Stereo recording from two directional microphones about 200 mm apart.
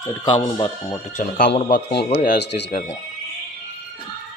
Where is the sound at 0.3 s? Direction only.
25° left (ahead or behind).